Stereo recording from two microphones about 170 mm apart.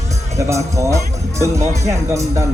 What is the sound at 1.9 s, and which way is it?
Speech, 20° right (ahead or behind).